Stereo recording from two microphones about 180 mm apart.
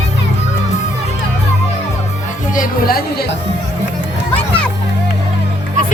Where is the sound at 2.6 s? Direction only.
55° left (ahead or behind).